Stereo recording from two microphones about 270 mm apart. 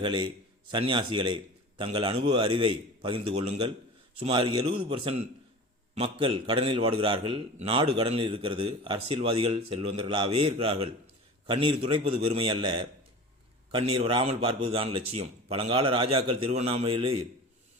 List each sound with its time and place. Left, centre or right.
0.0 s a man's voice: centre